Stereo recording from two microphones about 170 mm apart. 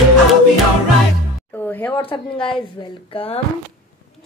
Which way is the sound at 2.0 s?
30° left (ahead or behind).